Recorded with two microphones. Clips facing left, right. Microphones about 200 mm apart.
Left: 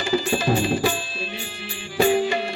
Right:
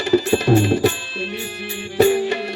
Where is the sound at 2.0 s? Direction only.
65° right (ahead or behind).